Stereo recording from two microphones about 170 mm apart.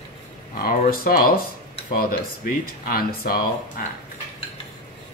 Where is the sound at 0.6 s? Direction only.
60° left (ahead or behind).